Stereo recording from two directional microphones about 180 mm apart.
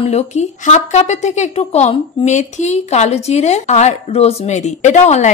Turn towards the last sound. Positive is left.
turn(degrees=40)  # may be behind; listen again after turning